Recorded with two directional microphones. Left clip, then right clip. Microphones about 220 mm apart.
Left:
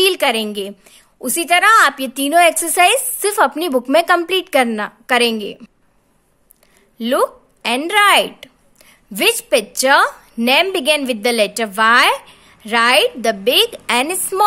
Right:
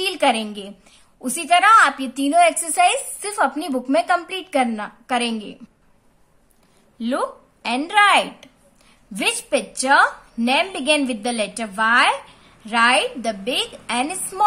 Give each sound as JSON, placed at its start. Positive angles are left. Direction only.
{"t": 0.0, "sound": "speech", "side_deg": 40}
{"t": 7.0, "sound": "speech", "side_deg": 40}